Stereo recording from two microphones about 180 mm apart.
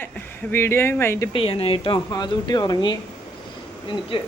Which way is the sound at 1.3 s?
30° left (ahead or behind).